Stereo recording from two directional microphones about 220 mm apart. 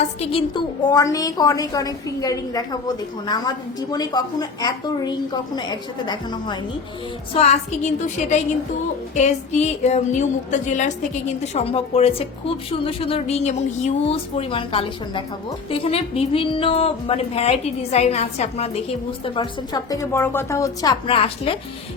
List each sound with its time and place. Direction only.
0.3 s a woman's voice: 25° left (ahead or behind)
19.2 s a woman's voice: 20° left (ahead or behind)